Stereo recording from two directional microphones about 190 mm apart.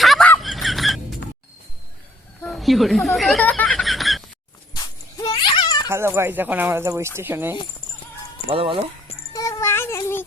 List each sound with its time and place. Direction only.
0.0 s a sound: centre (ahead or behind)
2.4 s snicker: centre (ahead or behind)
4.7 s dog: 20° left (ahead or behind)
5.9 s speech: 15° right (ahead or behind)
8.4 s speech: 25° right (ahead or behind)
9.3 s cat: 15° left (ahead or behind)